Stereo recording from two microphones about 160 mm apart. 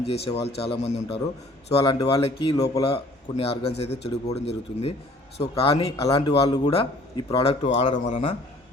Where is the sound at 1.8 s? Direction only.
25° left (ahead or behind).